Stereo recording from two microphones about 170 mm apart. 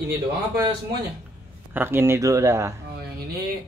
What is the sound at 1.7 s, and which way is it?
Speech, 10° right (ahead or behind).